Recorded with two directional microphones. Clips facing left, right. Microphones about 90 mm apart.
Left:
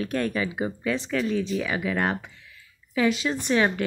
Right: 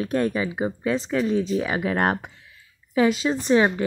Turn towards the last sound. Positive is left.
turn(degrees=-30)  # may be behind; listen again after turning